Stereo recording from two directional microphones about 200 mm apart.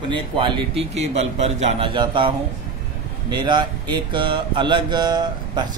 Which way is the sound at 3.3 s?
20° right (ahead or behind).